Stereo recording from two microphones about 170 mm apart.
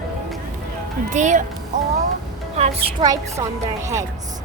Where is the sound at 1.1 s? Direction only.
45° right (ahead or behind).